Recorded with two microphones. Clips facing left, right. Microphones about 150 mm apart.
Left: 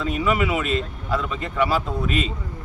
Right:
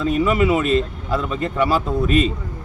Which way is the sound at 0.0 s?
40° right (ahead or behind).